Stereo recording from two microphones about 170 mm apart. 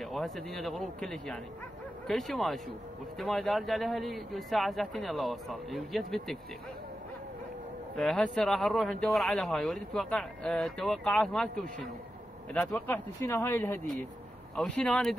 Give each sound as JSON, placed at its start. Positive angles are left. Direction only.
{"t": 0.0, "sound": "speech", "side_deg": 0}
{"t": 7.9, "sound": "speech", "side_deg": 5}
{"t": 12.5, "sound": "speech", "side_deg": 10}
{"t": 14.5, "sound": "speech", "side_deg": 5}